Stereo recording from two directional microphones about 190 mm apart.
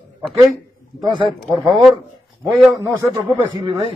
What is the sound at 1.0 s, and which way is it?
Speech, 25° right (ahead or behind).